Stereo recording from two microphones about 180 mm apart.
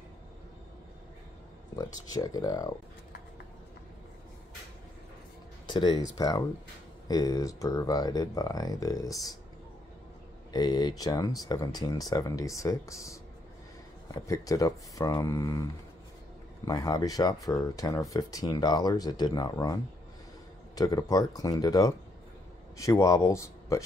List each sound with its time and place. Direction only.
1.8 s speech: 20° left (ahead or behind)
5.7 s speech: 25° left (ahead or behind)
10.5 s speech: 25° left (ahead or behind)
16.6 s speech: 20° left (ahead or behind)